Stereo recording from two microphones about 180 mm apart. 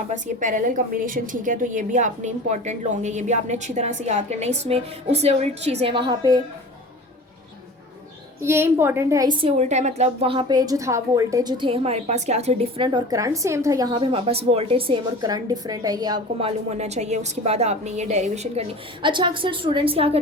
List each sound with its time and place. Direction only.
0.1 s a woman's voice: 45° right (ahead or behind); by 6.4 s 25° right (ahead or behind)
8.4 s a woman's voice: 15° right (ahead or behind)
9.4 s a woman's voice: 40° right (ahead or behind); by 16.5 s 25° right (ahead or behind)
16.5 s a woman's voice: 35° right (ahead or behind)
19.0 s a woman's voice: 25° right (ahead or behind)